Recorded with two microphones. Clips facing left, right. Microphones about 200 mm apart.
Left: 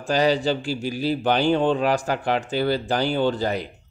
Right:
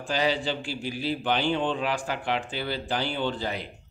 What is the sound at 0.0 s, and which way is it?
Speech, 40° left (ahead or behind).